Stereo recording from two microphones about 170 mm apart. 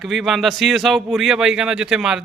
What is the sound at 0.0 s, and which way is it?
A man's voice, centre (ahead or behind).